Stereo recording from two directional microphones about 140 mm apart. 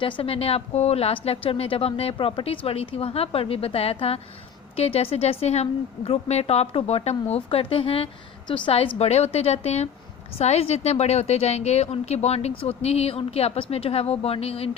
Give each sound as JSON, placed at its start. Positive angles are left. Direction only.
{"t": 0.0, "sound": "a woman's voice", "side_deg": 40}